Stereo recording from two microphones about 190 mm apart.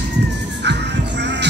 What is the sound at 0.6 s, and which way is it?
Music, 65° right (ahead or behind).